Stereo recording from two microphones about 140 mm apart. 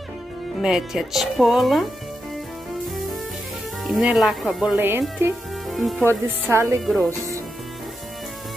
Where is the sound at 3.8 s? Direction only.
Centre (ahead or behind).